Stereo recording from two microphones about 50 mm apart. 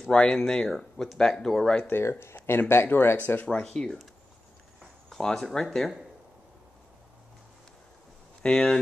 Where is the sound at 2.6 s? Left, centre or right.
Left.